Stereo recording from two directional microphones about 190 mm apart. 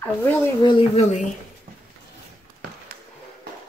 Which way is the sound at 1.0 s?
35° left (ahead or behind).